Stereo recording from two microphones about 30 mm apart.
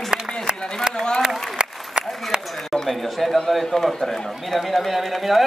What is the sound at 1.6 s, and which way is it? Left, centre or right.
Applause, right.